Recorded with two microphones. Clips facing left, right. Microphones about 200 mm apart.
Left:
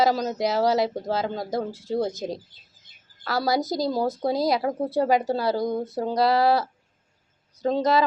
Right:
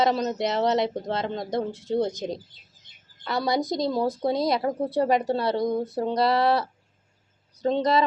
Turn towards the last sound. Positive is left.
turn(degrees=0)  # may be behind; listen again after turning